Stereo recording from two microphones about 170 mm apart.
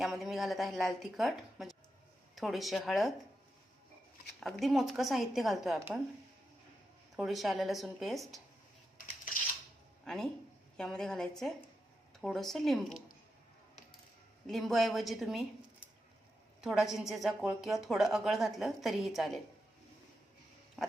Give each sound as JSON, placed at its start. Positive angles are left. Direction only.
{"t": 0.0, "sound": "a woman's voice", "side_deg": 0}
{"t": 4.4, "sound": "a woman's voice", "side_deg": 0}
{"t": 7.2, "sound": "a woman's voice", "side_deg": 0}
{"t": 10.1, "sound": "a woman's voice", "side_deg": 5}
{"t": 14.4, "sound": "a woman's voice", "side_deg": 0}
{"t": 16.6, "sound": "a woman's voice", "side_deg": 0}